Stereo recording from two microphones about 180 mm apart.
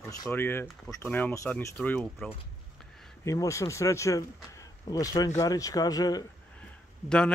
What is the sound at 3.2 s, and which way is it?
Speech, 15° left (ahead or behind).